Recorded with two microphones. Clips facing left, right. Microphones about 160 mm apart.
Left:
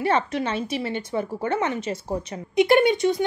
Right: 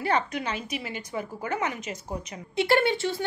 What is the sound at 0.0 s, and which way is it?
A woman's voice, 25° left (ahead or behind).